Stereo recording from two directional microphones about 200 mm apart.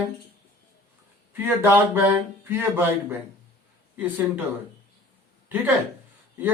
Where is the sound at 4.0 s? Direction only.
10° right (ahead or behind).